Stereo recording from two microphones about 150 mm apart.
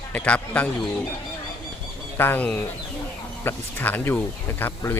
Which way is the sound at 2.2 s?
10° left (ahead or behind).